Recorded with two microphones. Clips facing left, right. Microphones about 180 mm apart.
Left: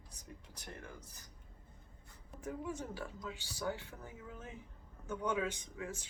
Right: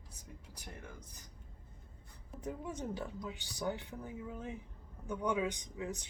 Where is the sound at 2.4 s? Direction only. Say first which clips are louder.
Right 1 dB; 20° right (ahead or behind).